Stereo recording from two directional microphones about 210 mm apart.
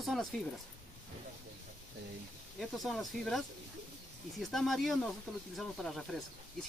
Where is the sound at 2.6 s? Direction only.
Centre (ahead or behind).